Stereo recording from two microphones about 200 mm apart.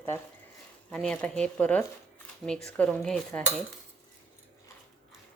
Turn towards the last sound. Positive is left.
turn(degrees=0)  # may be behind; listen again after turning